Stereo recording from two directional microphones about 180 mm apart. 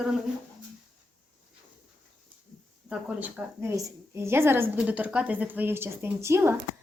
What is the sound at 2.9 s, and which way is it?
A woman's voice, 10° right (ahead or behind).